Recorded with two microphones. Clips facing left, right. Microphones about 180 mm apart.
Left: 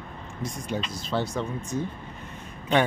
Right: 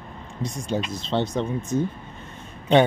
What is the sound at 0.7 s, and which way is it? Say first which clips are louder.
Speech: right 4 dB; 30° right (ahead or behind).